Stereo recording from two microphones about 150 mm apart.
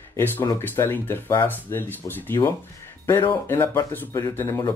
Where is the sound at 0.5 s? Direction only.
15° left (ahead or behind).